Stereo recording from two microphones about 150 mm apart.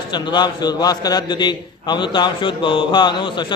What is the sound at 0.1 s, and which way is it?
A man's voice, 30° left (ahead or behind).